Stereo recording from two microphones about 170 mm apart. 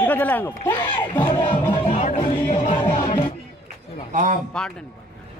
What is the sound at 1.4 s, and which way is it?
Music, 30° left (ahead or behind).